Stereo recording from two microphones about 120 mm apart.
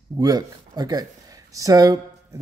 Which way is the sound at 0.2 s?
30° right (ahead or behind).